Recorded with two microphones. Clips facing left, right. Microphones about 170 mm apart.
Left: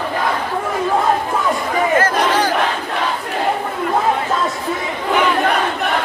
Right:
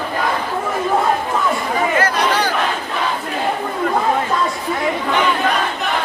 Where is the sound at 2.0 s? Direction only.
45° left (ahead or behind).